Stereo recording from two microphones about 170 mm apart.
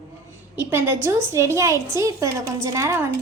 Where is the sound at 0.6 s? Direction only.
10° right (ahead or behind).